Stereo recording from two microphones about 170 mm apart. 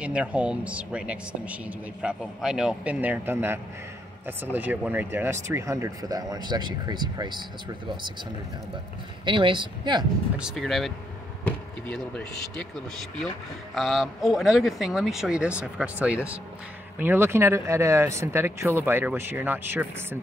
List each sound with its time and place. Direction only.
0.0 s speech: 5° right (ahead or behind); by 7.4 s 25° right (ahead or behind)
9.2 s speech: 30° right (ahead or behind)
10.3 s speech: centre (ahead or behind)